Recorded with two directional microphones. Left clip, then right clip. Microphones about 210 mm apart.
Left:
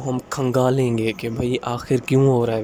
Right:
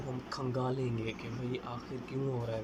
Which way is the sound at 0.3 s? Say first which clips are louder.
Left 17 dB; 60° left (ahead or behind).